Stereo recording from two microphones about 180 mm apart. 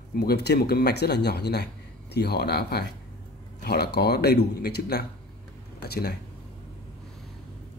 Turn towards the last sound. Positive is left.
turn(degrees=60)  # may be behind; listen again after turning